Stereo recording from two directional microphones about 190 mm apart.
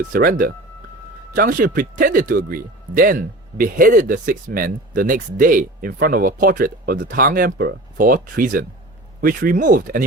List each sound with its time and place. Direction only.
0.1 s speech: 50° right (ahead or behind)